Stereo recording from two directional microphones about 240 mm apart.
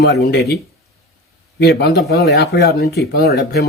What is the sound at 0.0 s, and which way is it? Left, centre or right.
Speech, left.